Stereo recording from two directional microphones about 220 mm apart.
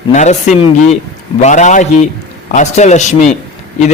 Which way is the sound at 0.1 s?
30° left (ahead or behind).